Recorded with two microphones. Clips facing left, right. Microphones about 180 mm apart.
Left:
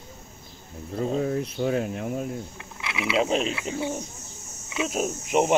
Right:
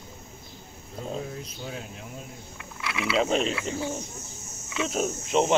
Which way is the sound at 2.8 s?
25° left (ahead or behind).